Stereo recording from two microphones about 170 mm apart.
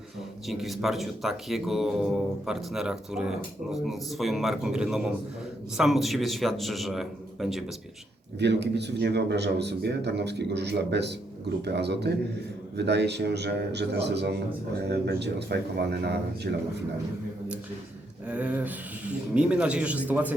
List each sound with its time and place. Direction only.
0.4 s speech: centre (ahead or behind)
8.4 s a man's voice: 90° right; by 16.6 s 75° right (ahead or behind)
18.3 s speech: 5° right (ahead or behind)